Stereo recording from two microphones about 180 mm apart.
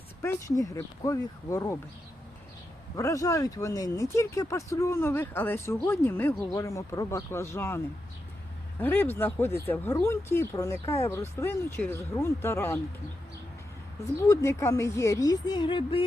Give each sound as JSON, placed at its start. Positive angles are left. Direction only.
{"t": 0.2, "sound": "speech", "side_deg": 15}
{"t": 2.9, "sound": "speech", "side_deg": 20}
{"t": 8.8, "sound": "speech", "side_deg": 10}
{"t": 14.2, "sound": "speech", "side_deg": 15}